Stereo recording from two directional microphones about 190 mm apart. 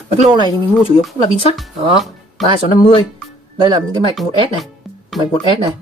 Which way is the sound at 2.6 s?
45° left (ahead or behind).